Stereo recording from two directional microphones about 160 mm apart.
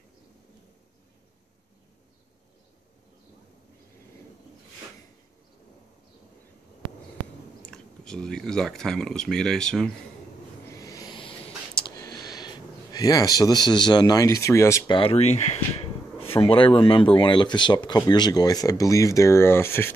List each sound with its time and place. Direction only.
7.6 s speech: 5° left (ahead or behind)
10.7 s a sound: 20° left (ahead or behind)
14.9 s speech: 35° left (ahead or behind); by 19.9 s 15° left (ahead or behind)